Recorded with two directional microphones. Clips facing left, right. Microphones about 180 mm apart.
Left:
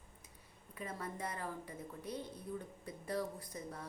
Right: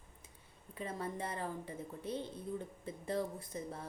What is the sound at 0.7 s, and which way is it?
A woman's voice, 30° right (ahead or behind).